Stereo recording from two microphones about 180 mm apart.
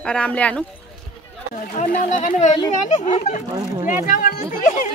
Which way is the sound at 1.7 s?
45° left (ahead or behind).